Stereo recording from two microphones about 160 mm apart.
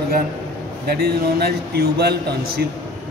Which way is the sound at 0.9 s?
85° right.